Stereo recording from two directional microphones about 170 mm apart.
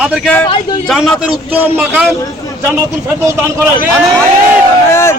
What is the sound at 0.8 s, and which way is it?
A man's voice, centre (ahead or behind).